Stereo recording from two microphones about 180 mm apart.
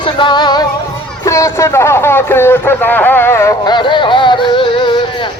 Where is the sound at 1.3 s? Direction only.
15° left (ahead or behind).